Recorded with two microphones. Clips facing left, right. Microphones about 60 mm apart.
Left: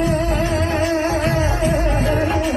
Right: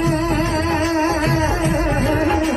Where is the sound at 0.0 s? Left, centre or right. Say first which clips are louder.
Even; right.